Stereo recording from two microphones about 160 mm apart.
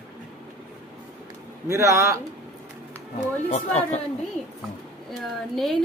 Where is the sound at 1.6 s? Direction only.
20° right (ahead or behind).